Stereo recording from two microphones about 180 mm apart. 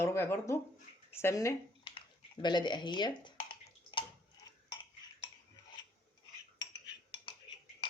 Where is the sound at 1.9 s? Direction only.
30° left (ahead or behind).